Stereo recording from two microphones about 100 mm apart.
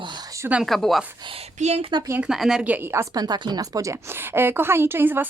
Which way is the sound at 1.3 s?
90° right.